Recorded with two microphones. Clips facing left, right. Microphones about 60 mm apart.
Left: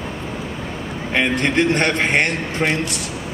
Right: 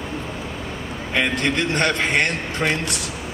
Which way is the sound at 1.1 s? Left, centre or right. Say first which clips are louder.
Left 3 dB; left.